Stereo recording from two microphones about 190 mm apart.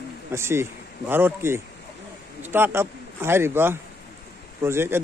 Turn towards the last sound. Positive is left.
turn(degrees=-15)  # may be behind; listen again after turning